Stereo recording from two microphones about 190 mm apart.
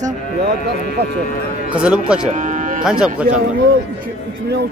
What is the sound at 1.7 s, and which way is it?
Speech, 5° right (ahead or behind).